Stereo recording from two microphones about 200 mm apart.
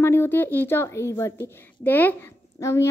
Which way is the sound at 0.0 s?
10° left (ahead or behind).